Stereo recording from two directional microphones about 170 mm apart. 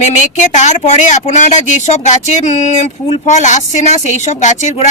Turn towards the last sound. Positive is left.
turn(degrees=45)  # may be behind; listen again after turning